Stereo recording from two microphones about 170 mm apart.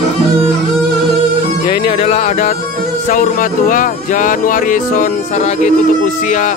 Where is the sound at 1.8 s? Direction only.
40° left (ahead or behind).